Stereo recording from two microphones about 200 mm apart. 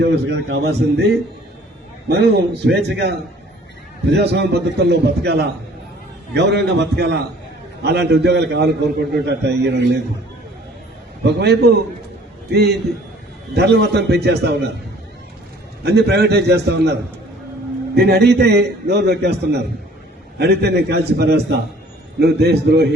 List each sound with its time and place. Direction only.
0.0 s a man's voice: 60° right (ahead or behind)
11.2 s a man's voice: 55° right (ahead or behind)
15.8 s a man's voice: 55° right (ahead or behind)